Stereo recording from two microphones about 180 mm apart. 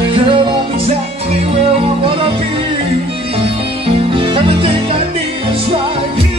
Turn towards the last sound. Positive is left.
turn(degrees=-30)  # may be behind; listen again after turning